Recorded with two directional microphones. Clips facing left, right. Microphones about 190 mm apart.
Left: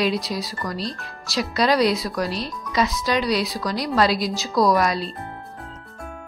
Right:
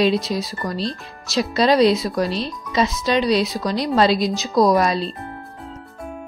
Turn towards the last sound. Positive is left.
turn(degrees=-25)  # may be behind; listen again after turning